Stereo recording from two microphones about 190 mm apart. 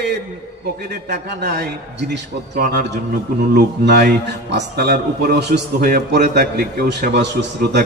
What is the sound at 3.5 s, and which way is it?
A man's voice, 55° right (ahead or behind).